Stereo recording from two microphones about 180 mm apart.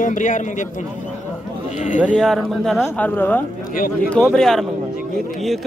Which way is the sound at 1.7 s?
40° left (ahead or behind).